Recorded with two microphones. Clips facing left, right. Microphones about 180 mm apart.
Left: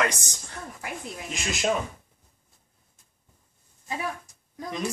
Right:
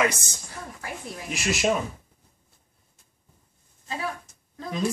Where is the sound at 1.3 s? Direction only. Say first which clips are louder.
Right 4 dB; 5° right (ahead or behind).